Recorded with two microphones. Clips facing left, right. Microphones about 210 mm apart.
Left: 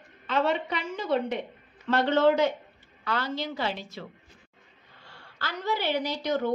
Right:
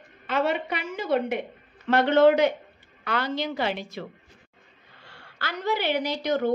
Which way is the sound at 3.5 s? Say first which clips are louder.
Right 3 dB; 60° right (ahead or behind).